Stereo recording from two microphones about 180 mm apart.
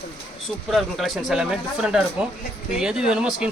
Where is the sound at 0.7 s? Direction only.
Centre (ahead or behind).